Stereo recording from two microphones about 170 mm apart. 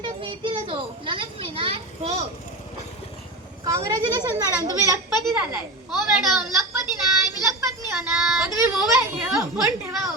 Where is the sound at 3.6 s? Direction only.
20° right (ahead or behind).